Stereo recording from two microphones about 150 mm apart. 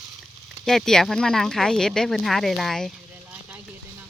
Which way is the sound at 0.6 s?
5° left (ahead or behind).